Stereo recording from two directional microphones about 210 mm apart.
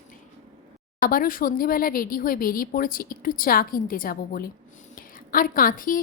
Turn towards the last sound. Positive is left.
turn(degrees=40)  # may be behind; listen again after turning